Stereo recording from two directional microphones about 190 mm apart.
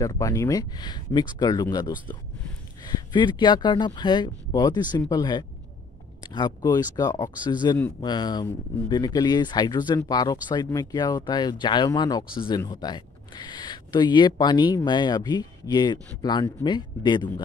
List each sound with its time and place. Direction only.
0.0 s speech: 15° left (ahead or behind)